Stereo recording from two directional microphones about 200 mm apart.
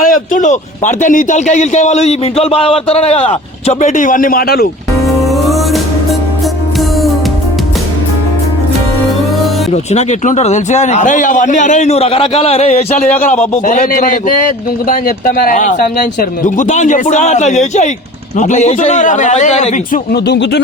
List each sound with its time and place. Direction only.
0.0 s a man's voice: 45° left (ahead or behind)
5.0 s music: centre (ahead or behind)
9.9 s a man's voice: 35° left (ahead or behind)
20.1 s speech: 55° left (ahead or behind)